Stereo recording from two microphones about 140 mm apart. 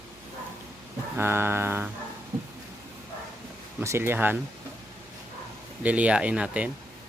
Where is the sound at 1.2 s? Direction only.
15° right (ahead or behind).